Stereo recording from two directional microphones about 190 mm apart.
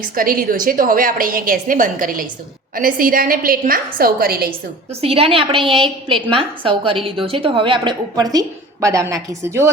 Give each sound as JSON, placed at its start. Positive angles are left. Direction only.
{"t": 0.0, "sound": "a woman's voice", "side_deg": -50}
{"t": 4.9, "sound": "a woman's voice", "side_deg": -30}